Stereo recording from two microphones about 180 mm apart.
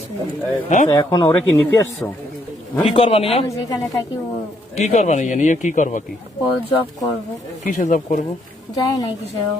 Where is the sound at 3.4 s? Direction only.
20° left (ahead or behind).